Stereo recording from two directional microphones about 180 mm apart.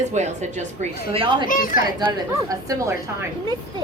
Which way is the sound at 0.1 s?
40° right (ahead or behind).